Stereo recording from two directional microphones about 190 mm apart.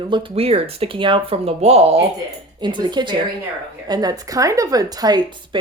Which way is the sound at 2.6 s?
25° right (ahead or behind).